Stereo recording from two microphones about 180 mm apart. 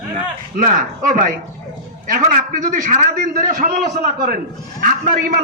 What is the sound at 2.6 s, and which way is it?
A man's voice, 45° right (ahead or behind).